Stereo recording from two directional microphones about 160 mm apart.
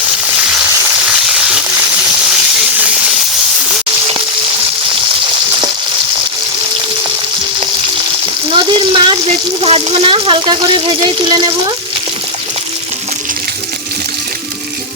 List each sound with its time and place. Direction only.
0.4 s frying: 5° right (ahead or behind)
8.7 s speech: 30° right (ahead or behind)